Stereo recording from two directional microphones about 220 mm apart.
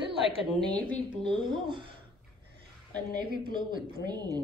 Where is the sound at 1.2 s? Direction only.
20° right (ahead or behind).